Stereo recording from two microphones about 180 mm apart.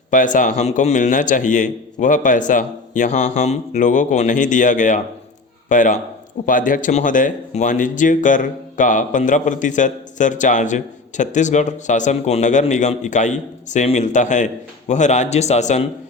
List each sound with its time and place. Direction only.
0.1 s speech: 45° left (ahead or behind)